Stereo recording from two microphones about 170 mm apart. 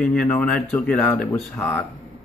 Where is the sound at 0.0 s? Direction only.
5° left (ahead or behind).